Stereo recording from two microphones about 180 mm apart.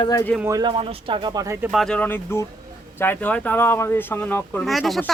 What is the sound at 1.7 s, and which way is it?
Speech, 5° left (ahead or behind).